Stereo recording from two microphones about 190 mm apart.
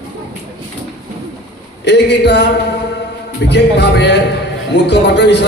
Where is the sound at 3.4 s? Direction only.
65° left (ahead or behind).